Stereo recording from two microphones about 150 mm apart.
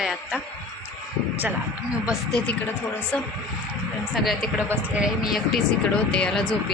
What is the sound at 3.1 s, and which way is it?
Speech, 5° left (ahead or behind).